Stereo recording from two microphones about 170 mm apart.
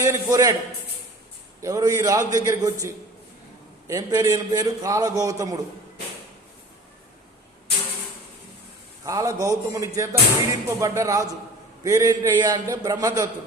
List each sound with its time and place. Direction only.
0.0 s speech: 20° right (ahead or behind)
1.6 s speech: 20° right (ahead or behind)
9.0 s speech: 20° right (ahead or behind)